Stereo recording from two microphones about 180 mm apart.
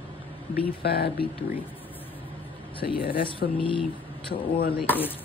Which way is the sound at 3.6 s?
30° left (ahead or behind).